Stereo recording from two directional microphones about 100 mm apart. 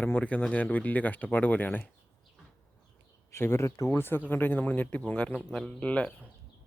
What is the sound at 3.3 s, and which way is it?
Speech, 25° left (ahead or behind).